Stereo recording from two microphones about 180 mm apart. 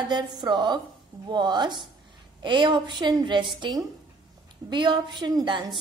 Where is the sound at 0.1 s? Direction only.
25° right (ahead or behind).